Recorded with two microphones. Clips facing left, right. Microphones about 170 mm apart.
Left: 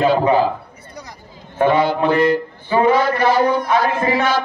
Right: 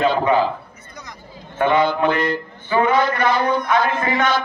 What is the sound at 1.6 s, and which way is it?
A man's voice, 30° left (ahead or behind).